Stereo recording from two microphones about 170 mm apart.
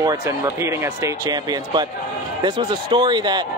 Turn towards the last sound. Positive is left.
turn(degrees=-25)  # may be behind; listen again after turning